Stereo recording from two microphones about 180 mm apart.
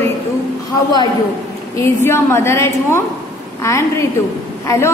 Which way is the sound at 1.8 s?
15° left (ahead or behind).